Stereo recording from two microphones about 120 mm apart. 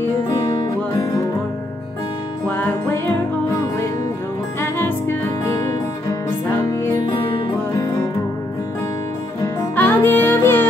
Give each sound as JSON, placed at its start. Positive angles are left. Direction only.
{"t": 0.3, "sound": "music", "side_deg": 30}
{"t": 2.4, "sound": "music", "side_deg": 15}
{"t": 4.6, "sound": "music", "side_deg": 20}
{"t": 6.2, "sound": "music", "side_deg": 25}
{"t": 9.8, "sound": "music", "side_deg": 15}